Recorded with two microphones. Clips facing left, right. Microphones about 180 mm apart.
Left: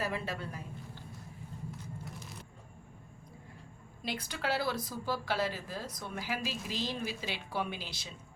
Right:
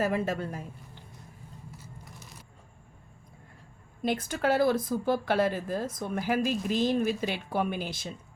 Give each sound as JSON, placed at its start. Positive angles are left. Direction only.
{"t": 0.0, "sound": "speech", "side_deg": -45}
{"t": 1.8, "sound": "vehicle", "side_deg": -5}
{"t": 4.0, "sound": "speech", "side_deg": -50}